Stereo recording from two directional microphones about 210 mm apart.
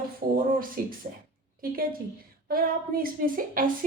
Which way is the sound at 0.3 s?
40° right (ahead or behind).